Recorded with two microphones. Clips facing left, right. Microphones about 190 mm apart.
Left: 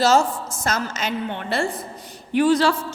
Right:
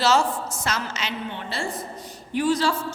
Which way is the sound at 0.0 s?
45° left (ahead or behind).